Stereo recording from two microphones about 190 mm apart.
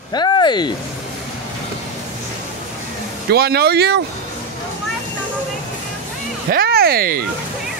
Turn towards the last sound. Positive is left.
turn(degrees=-50)  # may be behind; listen again after turning